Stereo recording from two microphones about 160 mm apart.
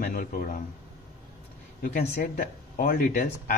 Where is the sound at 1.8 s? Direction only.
55° left (ahead or behind).